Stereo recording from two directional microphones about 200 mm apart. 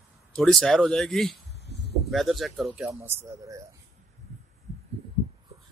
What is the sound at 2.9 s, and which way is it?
Speech, 15° right (ahead or behind).